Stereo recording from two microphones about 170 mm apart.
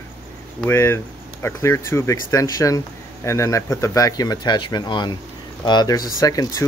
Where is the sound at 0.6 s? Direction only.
15° left (ahead or behind).